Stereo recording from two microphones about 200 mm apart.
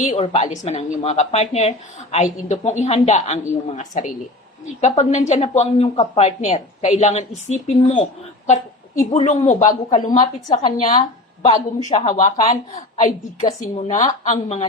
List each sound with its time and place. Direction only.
0.0 s a woman's voice: 35° left (ahead or behind)
9.1 s a woman's voice: 35° left (ahead or behind)
10.1 s a woman's voice: 20° left (ahead or behind)
11.9 s a woman's voice: 35° left (ahead or behind)